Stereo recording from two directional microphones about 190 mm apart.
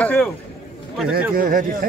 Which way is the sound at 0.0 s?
5° left (ahead or behind).